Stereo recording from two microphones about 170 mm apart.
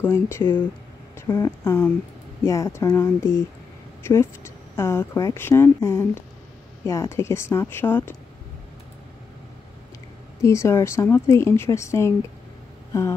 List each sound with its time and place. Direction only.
0.0 s speech: 15° left (ahead or behind)
10.4 s speech: 15° left (ahead or behind)